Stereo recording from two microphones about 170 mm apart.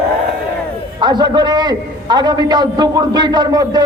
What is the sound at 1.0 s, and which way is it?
A man's voice, 25° right (ahead or behind).